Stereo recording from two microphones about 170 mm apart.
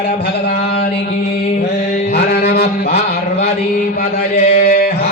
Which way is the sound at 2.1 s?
65° left (ahead or behind).